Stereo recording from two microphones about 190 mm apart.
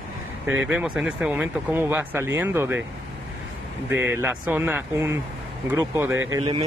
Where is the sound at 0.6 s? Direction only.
5° right (ahead or behind).